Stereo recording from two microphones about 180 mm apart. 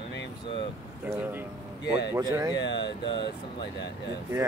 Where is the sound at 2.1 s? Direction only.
15° right (ahead or behind).